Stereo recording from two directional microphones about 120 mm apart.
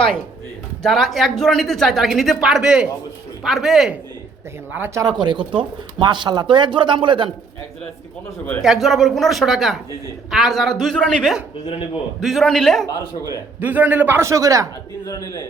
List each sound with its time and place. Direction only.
0.8 s speech: centre (ahead or behind)
4.9 s speech: 35° right (ahead or behind)
8.6 s speech: centre (ahead or behind)
13.6 s a man's voice: 15° right (ahead or behind)
15.0 s a man's voice: 25° left (ahead or behind)